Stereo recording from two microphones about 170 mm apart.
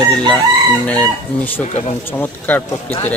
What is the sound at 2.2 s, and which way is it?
Speech, 10° left (ahead or behind).